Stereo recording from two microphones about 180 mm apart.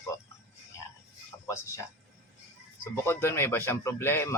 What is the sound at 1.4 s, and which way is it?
Speech, 15° left (ahead or behind).